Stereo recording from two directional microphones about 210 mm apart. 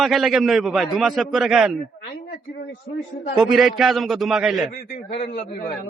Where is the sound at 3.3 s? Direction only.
Centre (ahead or behind).